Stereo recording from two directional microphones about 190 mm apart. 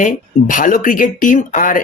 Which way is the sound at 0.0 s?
45° left (ahead or behind).